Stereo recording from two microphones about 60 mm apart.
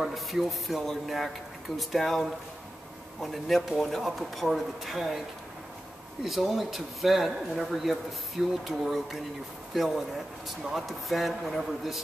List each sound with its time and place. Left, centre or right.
0.0 s speech: centre
6.2 s speech: centre